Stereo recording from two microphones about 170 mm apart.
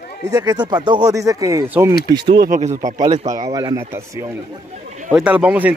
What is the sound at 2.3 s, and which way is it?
Speech, 60° right (ahead or behind).